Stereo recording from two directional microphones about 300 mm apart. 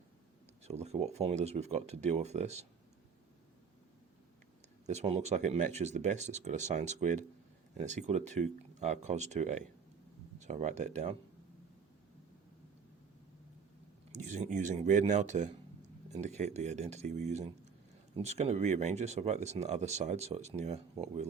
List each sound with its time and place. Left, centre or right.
0.6 s speech: right
4.9 s speech: right
14.1 s speech: right